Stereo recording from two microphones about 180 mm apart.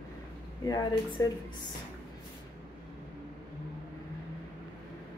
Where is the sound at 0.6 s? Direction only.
20° left (ahead or behind).